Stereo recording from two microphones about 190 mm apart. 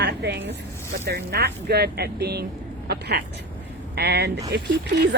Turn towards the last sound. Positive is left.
turn(degrees=-65)  # may be behind; listen again after turning